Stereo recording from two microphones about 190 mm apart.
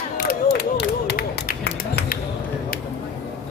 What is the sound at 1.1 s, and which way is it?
Run, 55° left (ahead or behind).